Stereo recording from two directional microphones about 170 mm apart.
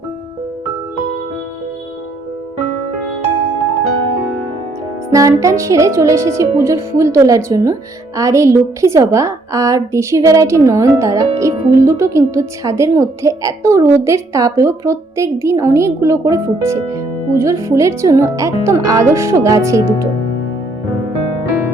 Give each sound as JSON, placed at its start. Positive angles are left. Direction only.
{"t": 5.1, "sound": "speech", "side_deg": -20}